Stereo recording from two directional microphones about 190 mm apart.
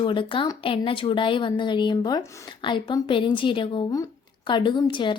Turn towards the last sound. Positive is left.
turn(degrees=25)  # may be behind; listen again after turning